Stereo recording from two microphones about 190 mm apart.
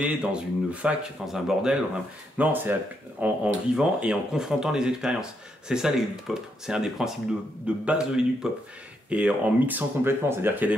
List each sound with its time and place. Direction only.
0.0 s speech: 5° right (ahead or behind)